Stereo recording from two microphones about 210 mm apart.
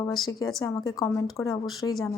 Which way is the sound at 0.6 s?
15° left (ahead or behind).